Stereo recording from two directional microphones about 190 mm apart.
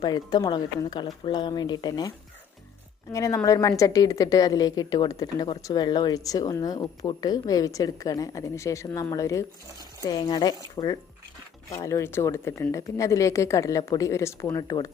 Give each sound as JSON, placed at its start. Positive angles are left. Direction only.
{"t": 0.0, "sound": "a woman's voice", "side_deg": 20}